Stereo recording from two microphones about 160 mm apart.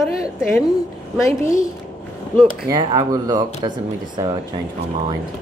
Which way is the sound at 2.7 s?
25° right (ahead or behind).